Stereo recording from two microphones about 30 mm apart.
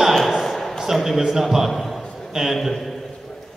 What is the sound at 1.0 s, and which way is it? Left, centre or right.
Speech, centre.